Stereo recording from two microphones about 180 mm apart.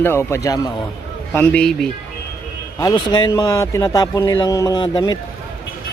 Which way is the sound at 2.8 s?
25° left (ahead or behind).